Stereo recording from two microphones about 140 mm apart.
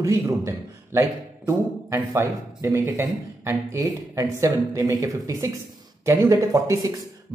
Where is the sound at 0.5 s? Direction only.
20° right (ahead or behind).